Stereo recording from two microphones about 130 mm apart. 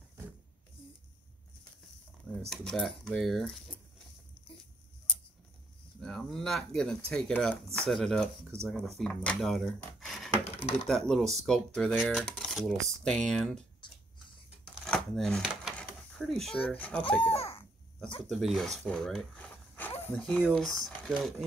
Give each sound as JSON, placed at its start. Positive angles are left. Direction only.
{"t": 2.4, "sound": "speech", "side_deg": 0}
{"t": 5.9, "sound": "speech", "side_deg": 5}
{"t": 10.4, "sound": "coin", "side_deg": 50}
{"t": 10.9, "sound": "speech", "side_deg": 5}
{"t": 14.9, "sound": "a sound", "side_deg": 5}
{"t": 16.1, "sound": "speech", "side_deg": 5}
{"t": 17.2, "sound": "a child's voice", "side_deg": 45}
{"t": 18.3, "sound": "speech", "side_deg": 0}